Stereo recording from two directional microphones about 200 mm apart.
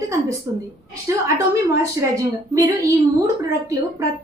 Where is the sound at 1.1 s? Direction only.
15° right (ahead or behind).